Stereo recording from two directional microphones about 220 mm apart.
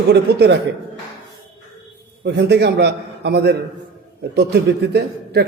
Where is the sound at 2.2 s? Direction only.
50° right (ahead or behind).